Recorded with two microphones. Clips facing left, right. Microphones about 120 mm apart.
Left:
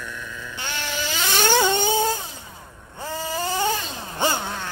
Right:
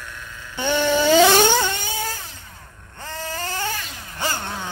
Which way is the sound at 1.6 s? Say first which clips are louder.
Left 7 dB; 25° left (ahead or behind).